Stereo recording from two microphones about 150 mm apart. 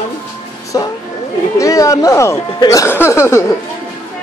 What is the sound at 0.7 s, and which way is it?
Speech, 25° left (ahead or behind).